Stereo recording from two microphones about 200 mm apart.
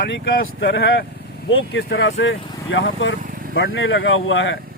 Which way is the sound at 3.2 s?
45° right (ahead or behind).